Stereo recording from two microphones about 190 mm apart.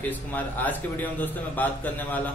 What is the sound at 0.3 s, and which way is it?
A man's voice, 10° left (ahead or behind).